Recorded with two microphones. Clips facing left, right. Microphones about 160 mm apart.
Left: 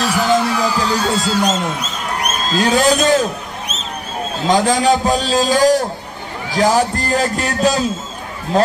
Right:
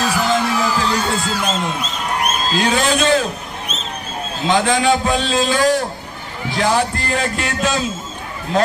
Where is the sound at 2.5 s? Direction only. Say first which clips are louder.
Left 5 dB; 40° left (ahead or behind).